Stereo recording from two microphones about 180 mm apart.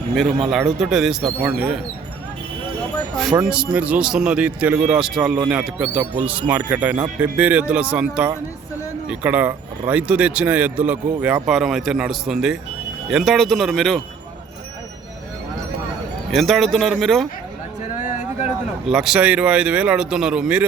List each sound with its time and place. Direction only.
0.1 s speech: centre (ahead or behind)
3.4 s speech: 5° right (ahead or behind)
16.3 s speech: centre (ahead or behind)
18.1 s a sound: 40° left (ahead or behind)
18.4 s speech: centre (ahead or behind)